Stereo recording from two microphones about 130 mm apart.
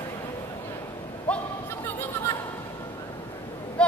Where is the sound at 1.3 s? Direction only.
10° left (ahead or behind).